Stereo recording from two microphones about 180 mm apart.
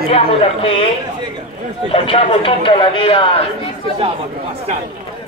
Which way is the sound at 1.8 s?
30° left (ahead or behind).